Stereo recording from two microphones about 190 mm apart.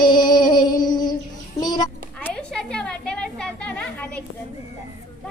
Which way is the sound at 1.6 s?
20° left (ahead or behind).